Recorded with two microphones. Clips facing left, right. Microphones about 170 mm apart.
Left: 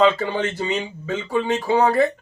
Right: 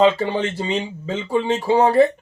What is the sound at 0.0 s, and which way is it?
Speech, 25° right (ahead or behind).